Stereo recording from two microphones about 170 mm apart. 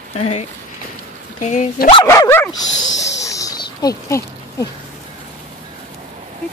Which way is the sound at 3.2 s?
20° left (ahead or behind).